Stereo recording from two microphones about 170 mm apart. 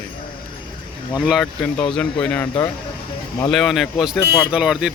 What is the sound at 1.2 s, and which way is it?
Speech, 5° right (ahead or behind).